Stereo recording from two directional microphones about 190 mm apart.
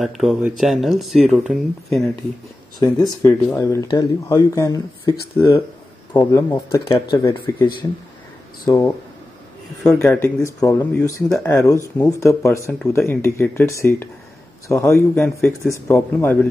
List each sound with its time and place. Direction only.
0.0 s speech: centre (ahead or behind)
3.2 s speech: 15° left (ahead or behind)
8.6 s speech: 20° left (ahead or behind)
9.9 s speech: 10° left (ahead or behind)